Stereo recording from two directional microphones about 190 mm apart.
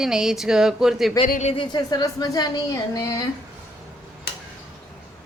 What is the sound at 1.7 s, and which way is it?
Speech, 20° left (ahead or behind).